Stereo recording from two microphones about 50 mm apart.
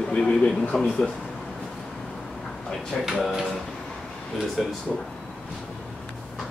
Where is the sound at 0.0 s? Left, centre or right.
Centre.